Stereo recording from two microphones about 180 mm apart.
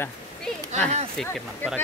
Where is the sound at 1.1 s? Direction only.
5° left (ahead or behind).